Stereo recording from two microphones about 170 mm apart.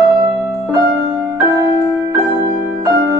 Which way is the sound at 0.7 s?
20° right (ahead or behind).